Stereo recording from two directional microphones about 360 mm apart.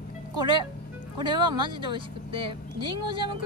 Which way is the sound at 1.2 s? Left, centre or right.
Centre.